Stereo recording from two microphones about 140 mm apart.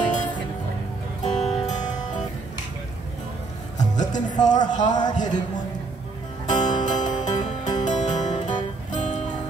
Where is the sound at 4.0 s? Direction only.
30° left (ahead or behind).